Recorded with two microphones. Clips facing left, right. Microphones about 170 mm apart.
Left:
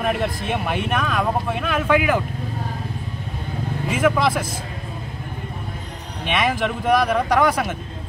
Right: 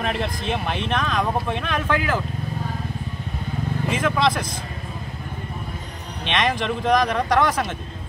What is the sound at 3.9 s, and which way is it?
Speech, 10° left (ahead or behind).